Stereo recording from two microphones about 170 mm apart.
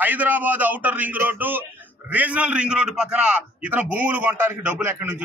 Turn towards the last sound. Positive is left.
turn(degrees=-10)  # may be behind; listen again after turning